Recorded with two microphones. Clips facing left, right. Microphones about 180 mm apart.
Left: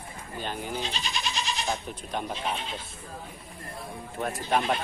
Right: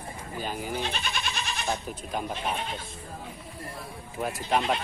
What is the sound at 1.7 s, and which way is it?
Speech, 5° right (ahead or behind).